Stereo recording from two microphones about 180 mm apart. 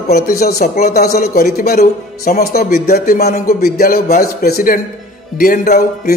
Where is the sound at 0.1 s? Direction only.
60° left (ahead or behind).